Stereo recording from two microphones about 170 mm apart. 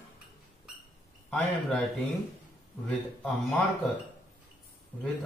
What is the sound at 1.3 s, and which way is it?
Speech, centre (ahead or behind).